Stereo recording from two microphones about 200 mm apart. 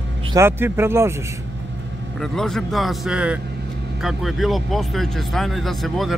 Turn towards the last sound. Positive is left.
turn(degrees=0)  # may be behind; listen again after turning